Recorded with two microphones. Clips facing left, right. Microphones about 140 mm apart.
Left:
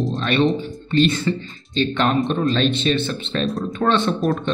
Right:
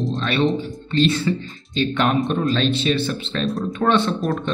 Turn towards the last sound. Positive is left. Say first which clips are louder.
# left 2 dB
turn(degrees=0)  # may be behind; listen again after turning